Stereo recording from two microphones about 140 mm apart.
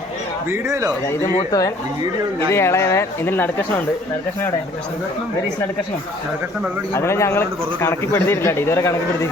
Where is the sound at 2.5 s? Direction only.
20° left (ahead or behind).